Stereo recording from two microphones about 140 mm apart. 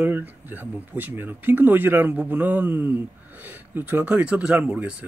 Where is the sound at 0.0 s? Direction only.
15° right (ahead or behind).